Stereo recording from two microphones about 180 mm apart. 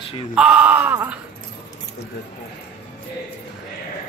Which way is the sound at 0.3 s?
5° right (ahead or behind).